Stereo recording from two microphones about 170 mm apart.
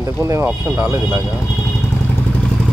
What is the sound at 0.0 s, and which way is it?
Speech, 15° right (ahead or behind).